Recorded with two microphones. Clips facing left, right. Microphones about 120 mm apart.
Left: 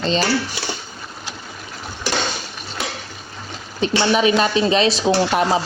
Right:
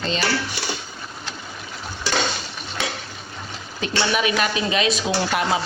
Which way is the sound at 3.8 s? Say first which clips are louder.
Left 5 dB; 30° left (ahead or behind).